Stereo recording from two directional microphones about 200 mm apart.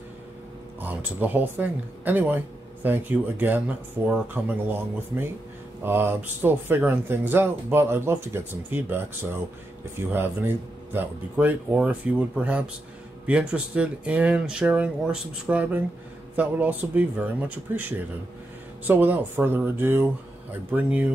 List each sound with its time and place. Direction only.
0.7 s speech: 10° right (ahead or behind)